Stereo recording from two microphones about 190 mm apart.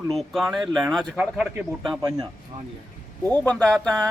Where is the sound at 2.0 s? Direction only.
20° right (ahead or behind).